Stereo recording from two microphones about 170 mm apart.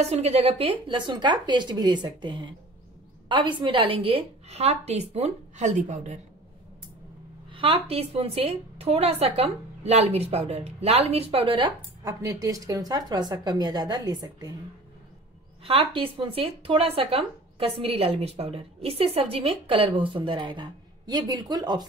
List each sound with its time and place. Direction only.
0.0 s speech: 40° right (ahead or behind)
7.5 s speech: 30° right (ahead or behind)
15.6 s speech: 30° right (ahead or behind)